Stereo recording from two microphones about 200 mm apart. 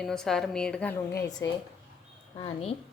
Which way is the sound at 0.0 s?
Centre (ahead or behind).